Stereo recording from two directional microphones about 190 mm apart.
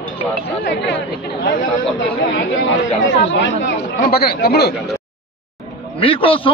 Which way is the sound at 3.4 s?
60° left (ahead or behind).